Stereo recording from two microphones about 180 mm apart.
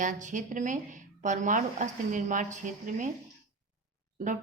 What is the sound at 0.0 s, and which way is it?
A woman's voice, 45° right (ahead or behind).